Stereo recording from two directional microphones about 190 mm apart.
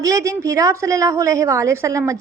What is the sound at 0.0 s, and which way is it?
A woman's voice, 15° right (ahead or behind).